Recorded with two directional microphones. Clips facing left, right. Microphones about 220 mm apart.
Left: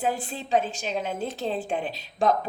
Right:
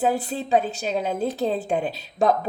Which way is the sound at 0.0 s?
40° right (ahead or behind).